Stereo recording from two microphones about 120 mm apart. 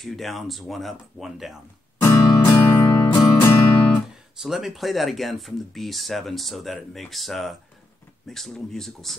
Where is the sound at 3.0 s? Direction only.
35° left (ahead or behind).